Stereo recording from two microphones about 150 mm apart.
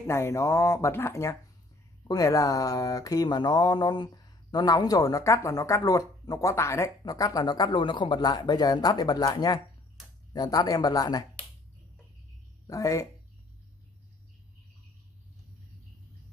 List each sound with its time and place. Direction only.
0.0 s speech: 20° left (ahead or behind)
12.6 s speech: 20° left (ahead or behind)